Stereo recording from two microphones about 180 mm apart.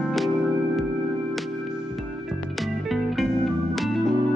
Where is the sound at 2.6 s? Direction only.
Centre (ahead or behind).